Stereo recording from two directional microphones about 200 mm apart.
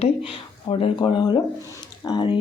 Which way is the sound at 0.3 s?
25° left (ahead or behind).